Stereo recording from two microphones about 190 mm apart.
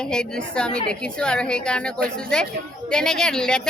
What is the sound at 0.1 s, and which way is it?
A woman's voice, 5° left (ahead or behind).